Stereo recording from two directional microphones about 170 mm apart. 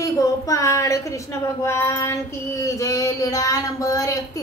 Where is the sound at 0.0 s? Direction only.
20° left (ahead or behind).